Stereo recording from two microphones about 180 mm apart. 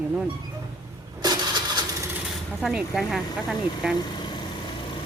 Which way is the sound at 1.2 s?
25° right (ahead or behind).